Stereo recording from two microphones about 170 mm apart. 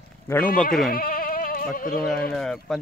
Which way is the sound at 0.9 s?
60° left (ahead or behind).